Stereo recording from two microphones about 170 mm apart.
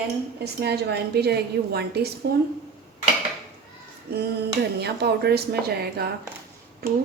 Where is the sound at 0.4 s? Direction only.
75° right (ahead or behind).